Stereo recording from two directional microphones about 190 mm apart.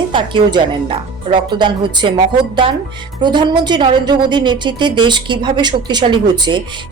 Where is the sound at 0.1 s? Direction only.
25° right (ahead or behind).